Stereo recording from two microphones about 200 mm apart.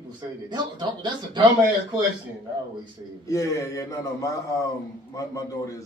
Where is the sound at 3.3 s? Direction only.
15° left (ahead or behind).